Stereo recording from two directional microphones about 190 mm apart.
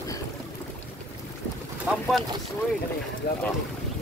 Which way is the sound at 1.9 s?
10° right (ahead or behind).